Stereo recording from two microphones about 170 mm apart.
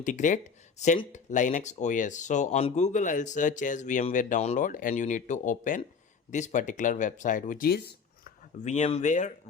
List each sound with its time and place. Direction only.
0.0 s speech: 45° left (ahead or behind); by 8.3 s 70° left (ahead or behind)
8.6 s speech: 40° left (ahead or behind)